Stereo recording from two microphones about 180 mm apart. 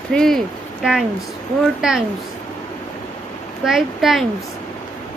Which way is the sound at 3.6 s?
Centre (ahead or behind).